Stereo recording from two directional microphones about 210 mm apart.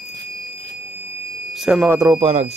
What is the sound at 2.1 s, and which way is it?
Speech, 30° right (ahead or behind).